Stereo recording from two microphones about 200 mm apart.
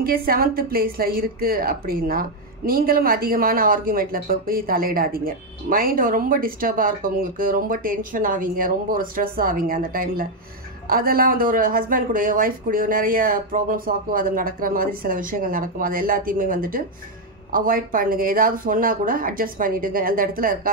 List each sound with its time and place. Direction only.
0.0 s a woman's voice: 50° right (ahead or behind)